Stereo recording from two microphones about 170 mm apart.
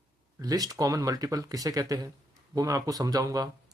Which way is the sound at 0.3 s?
20° right (ahead or behind).